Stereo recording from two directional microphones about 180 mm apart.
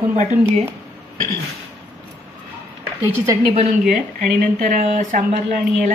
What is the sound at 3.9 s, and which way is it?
Speech, 45° right (ahead or behind).